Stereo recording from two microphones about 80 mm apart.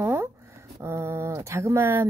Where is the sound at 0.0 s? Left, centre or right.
Right.